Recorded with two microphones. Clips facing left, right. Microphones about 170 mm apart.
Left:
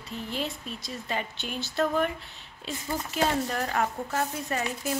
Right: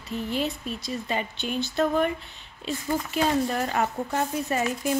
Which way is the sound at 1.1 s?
Centre (ahead or behind).